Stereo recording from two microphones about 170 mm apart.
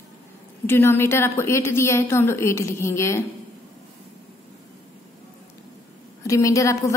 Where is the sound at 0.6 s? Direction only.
15° left (ahead or behind).